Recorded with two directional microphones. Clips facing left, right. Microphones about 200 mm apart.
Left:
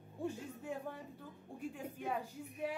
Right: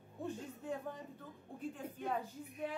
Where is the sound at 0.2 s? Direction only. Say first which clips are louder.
Left 1 dB; 10° left (ahead or behind).